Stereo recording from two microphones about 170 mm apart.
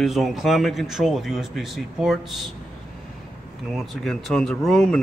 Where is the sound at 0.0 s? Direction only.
Centre (ahead or behind).